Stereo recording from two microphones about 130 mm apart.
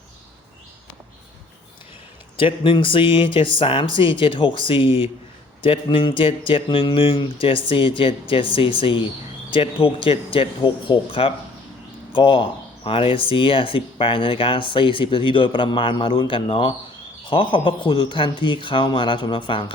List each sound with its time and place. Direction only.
2.4 s speech: 40° left (ahead or behind)